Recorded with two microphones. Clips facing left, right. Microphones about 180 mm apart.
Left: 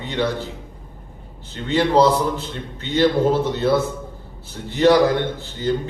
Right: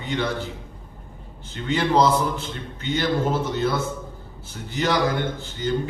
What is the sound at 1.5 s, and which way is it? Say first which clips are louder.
A man's voice: left 3 dB; 35° left (ahead or behind).